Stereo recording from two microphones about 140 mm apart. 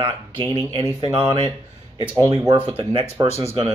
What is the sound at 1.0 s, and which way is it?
Speech, 30° right (ahead or behind).